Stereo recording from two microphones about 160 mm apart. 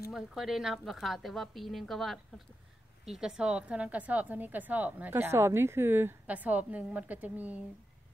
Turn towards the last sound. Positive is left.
turn(degrees=-10)  # may be behind; listen again after turning